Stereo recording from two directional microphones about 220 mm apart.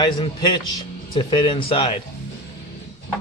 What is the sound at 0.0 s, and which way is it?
A man's voice, 20° left (ahead or behind).